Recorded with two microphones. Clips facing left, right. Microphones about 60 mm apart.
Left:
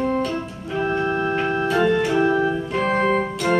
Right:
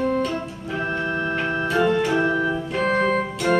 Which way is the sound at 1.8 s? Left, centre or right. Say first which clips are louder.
Left 1 dB; centre.